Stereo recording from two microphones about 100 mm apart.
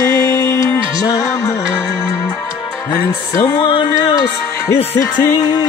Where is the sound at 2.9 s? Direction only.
35° left (ahead or behind).